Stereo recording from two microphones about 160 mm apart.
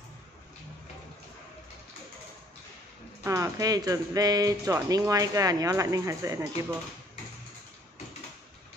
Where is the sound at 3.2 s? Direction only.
20° right (ahead or behind).